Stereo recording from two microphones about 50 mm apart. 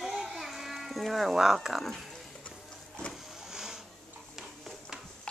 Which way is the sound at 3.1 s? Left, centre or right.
Centre.